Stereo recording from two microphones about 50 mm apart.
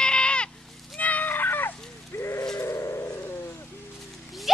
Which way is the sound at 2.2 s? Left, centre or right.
Left.